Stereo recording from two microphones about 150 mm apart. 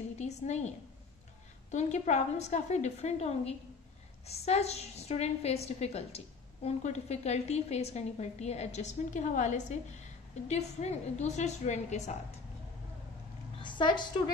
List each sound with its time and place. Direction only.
0.2 s a sound: 50° left (ahead or behind)
1.7 s a woman's voice: 50° left (ahead or behind)
13.6 s a woman's voice: 30° left (ahead or behind)